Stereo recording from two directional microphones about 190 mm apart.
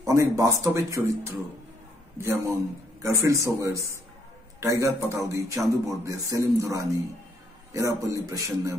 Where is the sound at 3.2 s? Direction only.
15° right (ahead or behind).